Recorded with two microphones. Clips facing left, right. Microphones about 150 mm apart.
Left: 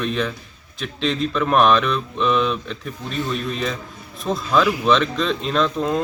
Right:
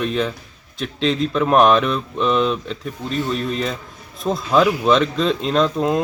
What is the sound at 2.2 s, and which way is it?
Speech, 30° right (ahead or behind).